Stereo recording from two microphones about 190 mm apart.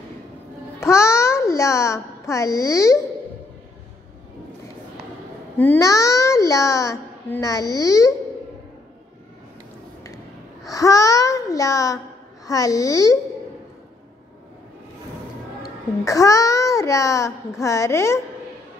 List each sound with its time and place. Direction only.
0.7 s a child's voice: 15° left (ahead or behind)
5.6 s a child's voice: 15° left (ahead or behind)
10.0 s a child's voice: 15° left (ahead or behind)
15.6 s a child's voice: 15° left (ahead or behind)